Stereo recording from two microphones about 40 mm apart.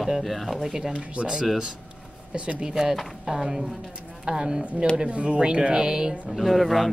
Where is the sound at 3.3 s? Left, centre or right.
Centre.